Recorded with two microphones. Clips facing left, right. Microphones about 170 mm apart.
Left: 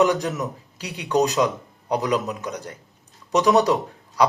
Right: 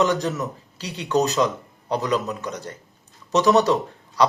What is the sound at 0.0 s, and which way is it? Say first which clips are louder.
A man's voice: left 1 dB; 10° left (ahead or behind).